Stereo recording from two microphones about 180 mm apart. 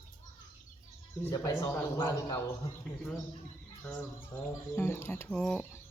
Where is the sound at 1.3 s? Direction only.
15° left (ahead or behind).